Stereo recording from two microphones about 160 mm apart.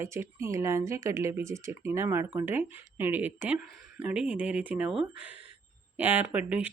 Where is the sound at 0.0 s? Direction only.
15° right (ahead or behind).